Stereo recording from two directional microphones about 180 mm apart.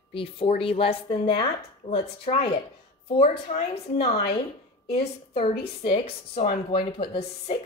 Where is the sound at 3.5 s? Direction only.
35° left (ahead or behind).